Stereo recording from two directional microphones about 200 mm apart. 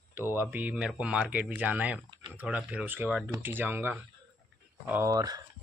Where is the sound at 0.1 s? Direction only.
10° right (ahead or behind).